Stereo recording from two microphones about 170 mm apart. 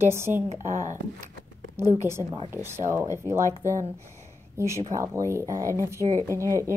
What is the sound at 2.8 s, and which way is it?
Speech, 15° right (ahead or behind).